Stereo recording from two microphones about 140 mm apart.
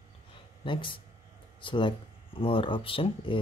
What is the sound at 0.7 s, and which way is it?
Speech, 35° left (ahead or behind).